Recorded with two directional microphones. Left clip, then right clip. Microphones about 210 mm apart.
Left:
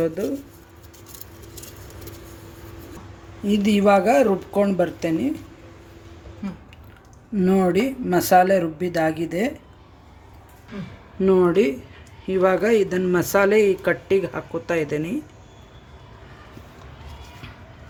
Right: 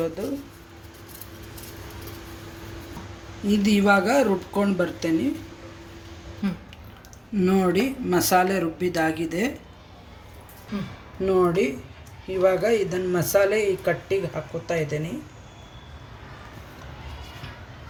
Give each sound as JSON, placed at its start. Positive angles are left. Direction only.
{"t": 3.5, "sound": "speech", "side_deg": 30}
{"t": 6.4, "sound": "a sound", "side_deg": -10}
{"t": 7.4, "sound": "speech", "side_deg": 30}
{"t": 11.3, "sound": "speech", "side_deg": 35}